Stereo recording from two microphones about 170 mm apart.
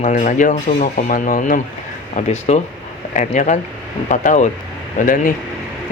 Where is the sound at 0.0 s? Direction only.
50° left (ahead or behind).